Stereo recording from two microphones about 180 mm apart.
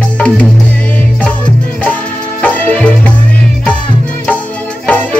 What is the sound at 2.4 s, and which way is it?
Music, 5° left (ahead or behind).